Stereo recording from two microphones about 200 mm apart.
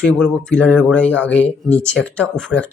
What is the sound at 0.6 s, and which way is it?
Speech, 10° right (ahead or behind).